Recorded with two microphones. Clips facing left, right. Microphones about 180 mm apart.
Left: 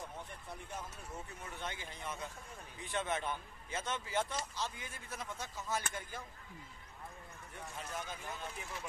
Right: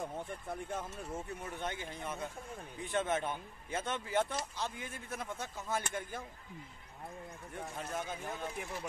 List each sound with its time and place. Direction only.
0.2 s a man's voice: 50° right (ahead or behind)
7.5 s a man's voice: 50° right (ahead or behind)
8.0 s speech: 25° right (ahead or behind)